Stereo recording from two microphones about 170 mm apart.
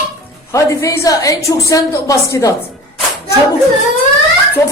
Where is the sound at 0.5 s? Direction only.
20° left (ahead or behind).